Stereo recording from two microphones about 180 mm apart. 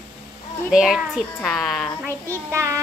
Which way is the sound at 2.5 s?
15° right (ahead or behind).